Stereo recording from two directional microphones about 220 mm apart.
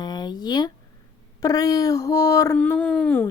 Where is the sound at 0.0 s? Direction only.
20° left (ahead or behind).